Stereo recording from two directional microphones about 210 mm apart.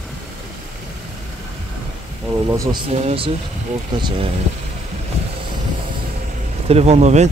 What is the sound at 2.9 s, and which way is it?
Speech, 30° right (ahead or behind).